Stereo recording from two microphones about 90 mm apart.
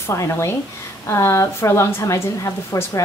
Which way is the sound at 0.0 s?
30° left (ahead or behind).